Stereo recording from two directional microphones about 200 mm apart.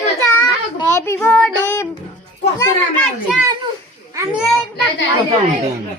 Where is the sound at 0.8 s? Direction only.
15° left (ahead or behind).